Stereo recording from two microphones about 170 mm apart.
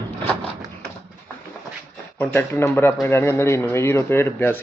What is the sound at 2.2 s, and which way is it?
A man's voice, 10° left (ahead or behind).